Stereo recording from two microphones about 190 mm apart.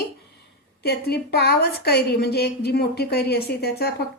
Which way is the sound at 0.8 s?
55° left (ahead or behind).